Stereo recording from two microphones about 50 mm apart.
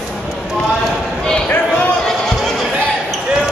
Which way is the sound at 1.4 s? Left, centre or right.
Left.